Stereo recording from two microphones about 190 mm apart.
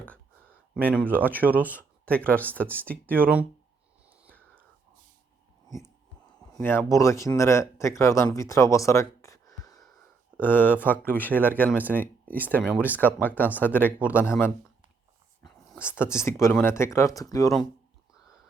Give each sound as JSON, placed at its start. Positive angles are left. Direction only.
{"t": 0.8, "sound": "speech", "side_deg": -10}
{"t": 1.7, "sound": "speech", "side_deg": 5}
{"t": 3.2, "sound": "speech", "side_deg": -5}
{"t": 6.5, "sound": "speech", "side_deg": 10}
{"t": 12.6, "sound": "speech", "side_deg": -5}
{"t": 13.1, "sound": "speech", "side_deg": 10}
{"t": 13.8, "sound": "speech", "side_deg": -5}
{"t": 14.2, "sound": "speech", "side_deg": 10}
{"t": 15.7, "sound": "a sound", "side_deg": -5}
{"t": 16.0, "sound": "speech", "side_deg": 15}